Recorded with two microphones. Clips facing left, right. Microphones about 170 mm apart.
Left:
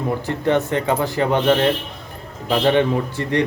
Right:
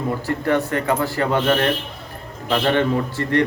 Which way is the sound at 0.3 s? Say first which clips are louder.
Left 1 dB; 20° left (ahead or behind).